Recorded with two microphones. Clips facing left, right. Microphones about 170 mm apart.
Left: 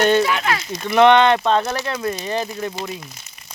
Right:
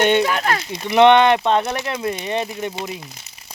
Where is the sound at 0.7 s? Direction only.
20° right (ahead or behind).